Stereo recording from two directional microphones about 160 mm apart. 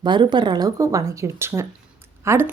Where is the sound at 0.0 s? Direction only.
30° right (ahead or behind).